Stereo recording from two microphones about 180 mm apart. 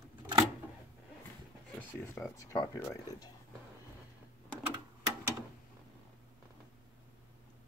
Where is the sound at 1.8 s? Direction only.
15° left (ahead or behind).